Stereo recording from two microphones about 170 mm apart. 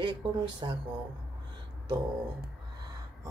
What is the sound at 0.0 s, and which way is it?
Speech, 25° right (ahead or behind).